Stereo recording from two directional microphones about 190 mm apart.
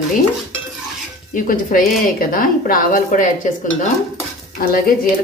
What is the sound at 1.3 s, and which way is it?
Speech, 45° left (ahead or behind).